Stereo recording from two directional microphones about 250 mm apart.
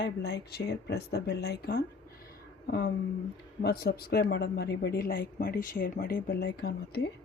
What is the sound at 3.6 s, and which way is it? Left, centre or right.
Speech, left.